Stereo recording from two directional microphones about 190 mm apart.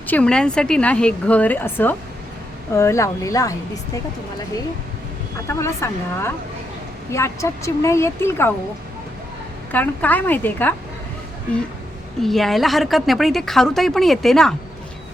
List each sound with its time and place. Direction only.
0.1 s speech: 5° left (ahead or behind)
5.5 s speech: 15° left (ahead or behind)
9.7 s speech: 10° left (ahead or behind)
12.2 s speech: centre (ahead or behind)